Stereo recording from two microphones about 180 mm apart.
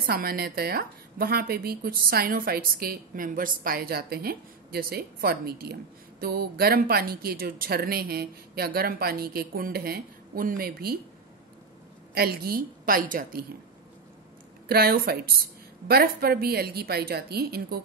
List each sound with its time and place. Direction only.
0.0 s a woman's voice: 60° right (ahead or behind)
12.1 s a woman's voice: 60° right (ahead or behind)
14.7 s a woman's voice: 60° right (ahead or behind)